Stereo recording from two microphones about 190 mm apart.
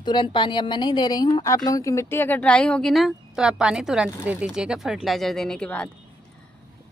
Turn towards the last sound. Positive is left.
turn(degrees=5)  # may be behind; listen again after turning